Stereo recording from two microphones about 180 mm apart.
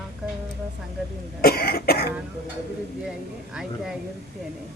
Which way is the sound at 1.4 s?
60° left (ahead or behind).